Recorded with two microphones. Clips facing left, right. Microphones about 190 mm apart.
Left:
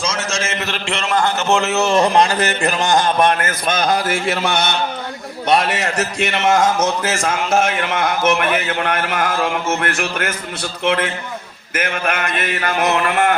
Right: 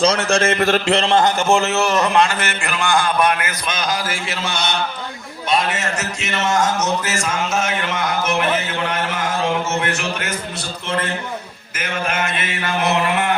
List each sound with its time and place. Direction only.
0.0 s a man's voice: 60° right (ahead or behind); by 1.2 s 35° right (ahead or behind)
1.2 s a man's voice: 10° right (ahead or behind)
1.8 s a man's voice: 25° left (ahead or behind); by 10.3 s 55° left (ahead or behind)
11.7 s speech: 60° left (ahead or behind)